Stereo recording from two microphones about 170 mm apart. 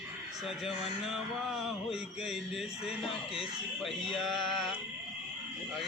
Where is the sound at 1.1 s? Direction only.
Centre (ahead or behind).